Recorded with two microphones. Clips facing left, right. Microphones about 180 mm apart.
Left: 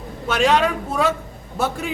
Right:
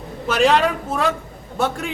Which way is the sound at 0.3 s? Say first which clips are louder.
Right 1 dB; centre (ahead or behind).